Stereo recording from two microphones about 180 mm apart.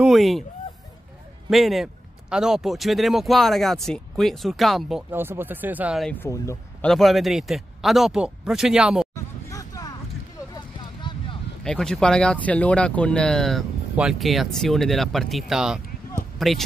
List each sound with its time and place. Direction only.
0.0 s speech: centre (ahead or behind)
1.5 s speech: centre (ahead or behind)
5.1 s speech: 10° right (ahead or behind)
6.0 s speech: 10° left (ahead or behind)
6.9 s speech: centre (ahead or behind)
9.1 s a sound: 20° left (ahead or behind)
10.5 s vehicle: 25° left (ahead or behind)
11.6 s speech: 5° left (ahead or behind)